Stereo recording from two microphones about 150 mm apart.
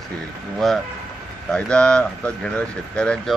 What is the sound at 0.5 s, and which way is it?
Speech, centre (ahead or behind).